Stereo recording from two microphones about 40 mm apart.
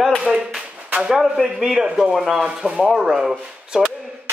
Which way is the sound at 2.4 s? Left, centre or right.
Right.